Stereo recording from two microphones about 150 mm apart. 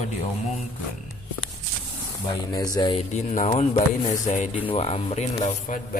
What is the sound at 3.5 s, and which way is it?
Speech, 40° left (ahead or behind).